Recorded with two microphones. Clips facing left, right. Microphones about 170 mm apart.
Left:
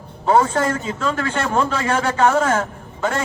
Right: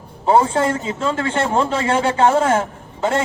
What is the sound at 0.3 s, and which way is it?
Speech, 25° right (ahead or behind).